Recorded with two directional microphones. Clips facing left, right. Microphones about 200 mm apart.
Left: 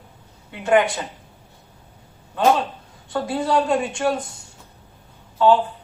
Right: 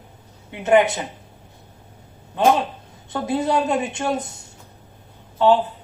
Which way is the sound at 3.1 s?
20° right (ahead or behind).